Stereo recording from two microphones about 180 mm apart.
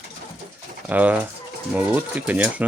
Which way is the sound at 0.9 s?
10° right (ahead or behind).